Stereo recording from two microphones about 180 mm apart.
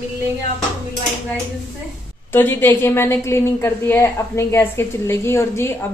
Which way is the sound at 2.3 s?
10° left (ahead or behind).